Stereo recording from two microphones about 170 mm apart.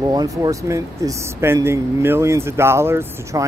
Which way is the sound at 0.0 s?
20° right (ahead or behind).